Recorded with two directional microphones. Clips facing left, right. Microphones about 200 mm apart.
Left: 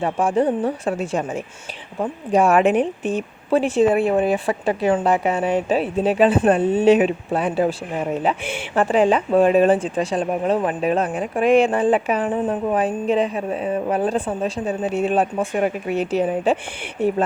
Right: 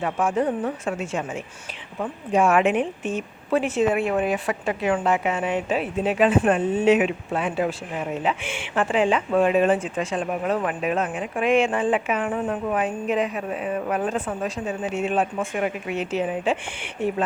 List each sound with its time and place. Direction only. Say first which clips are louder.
0.0 s speech: left 4 dB; 30° left (ahead or behind)